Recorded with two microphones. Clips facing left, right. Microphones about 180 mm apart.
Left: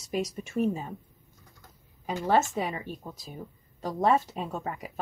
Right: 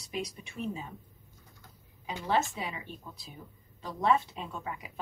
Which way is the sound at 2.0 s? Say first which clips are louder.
Left 5 dB; 45° left (ahead or behind).